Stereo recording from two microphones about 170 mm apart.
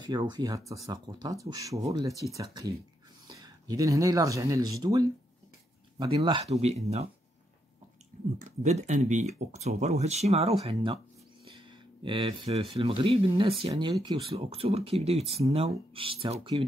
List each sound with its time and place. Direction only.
0.2 s speech: 20° right (ahead or behind)
6.1 s speech: 35° right (ahead or behind)
8.4 s speech: 45° right (ahead or behind)